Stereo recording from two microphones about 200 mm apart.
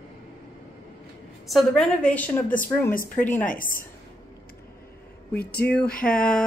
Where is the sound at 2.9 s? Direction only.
45° left (ahead or behind).